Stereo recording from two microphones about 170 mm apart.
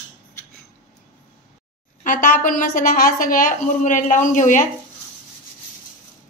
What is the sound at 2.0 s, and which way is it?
A woman's voice, 55° left (ahead or behind).